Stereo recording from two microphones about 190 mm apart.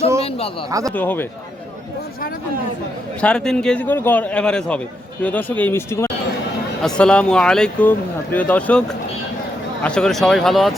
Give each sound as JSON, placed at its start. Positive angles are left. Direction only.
{"t": 0.2, "sound": "speech", "side_deg": 30}
{"t": 0.7, "sound": "speech", "side_deg": -20}
{"t": 0.9, "sound": "a man's voice", "side_deg": 10}
{"t": 3.2, "sound": "a man's voice", "side_deg": 5}